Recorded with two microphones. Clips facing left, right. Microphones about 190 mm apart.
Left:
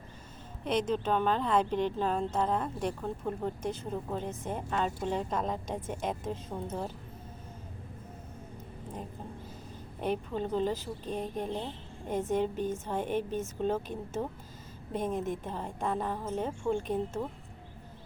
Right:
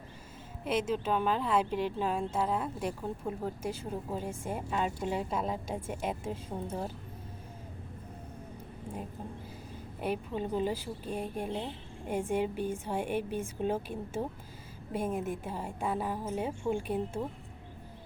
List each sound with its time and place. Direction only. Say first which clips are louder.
0.6 s speech: left 1 dB; 5° right (ahead or behind)
10.0 s speech: left 1 dB; 5° right (ahead or behind)